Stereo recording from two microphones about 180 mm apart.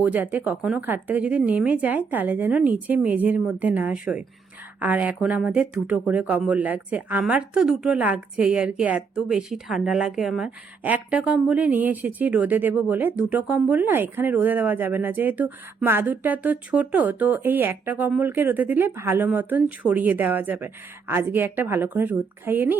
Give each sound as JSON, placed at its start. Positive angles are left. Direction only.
{"t": 0.0, "sound": "speech", "side_deg": -10}